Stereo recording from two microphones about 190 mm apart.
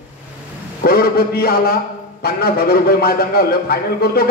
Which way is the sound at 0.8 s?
55° left (ahead or behind).